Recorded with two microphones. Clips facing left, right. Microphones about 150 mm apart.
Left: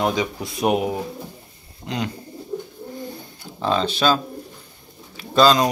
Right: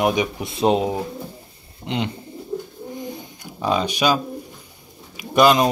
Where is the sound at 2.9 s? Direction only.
15° right (ahead or behind).